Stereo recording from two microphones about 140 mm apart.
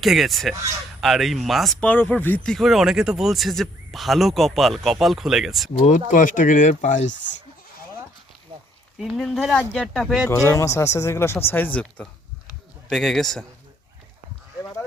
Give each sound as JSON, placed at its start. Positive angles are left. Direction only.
{"t": 0.0, "sound": "speech", "side_deg": 0}
{"t": 6.1, "sound": "speech", "side_deg": 65}
{"t": 9.0, "sound": "speech", "side_deg": 0}
{"t": 10.2, "sound": "speech", "side_deg": 20}